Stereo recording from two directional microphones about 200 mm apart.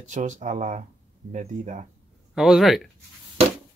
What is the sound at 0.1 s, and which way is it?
Speech, 35° right (ahead or behind).